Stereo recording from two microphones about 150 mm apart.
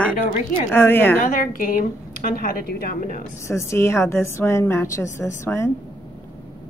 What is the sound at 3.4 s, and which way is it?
A woman's voice, 20° left (ahead or behind).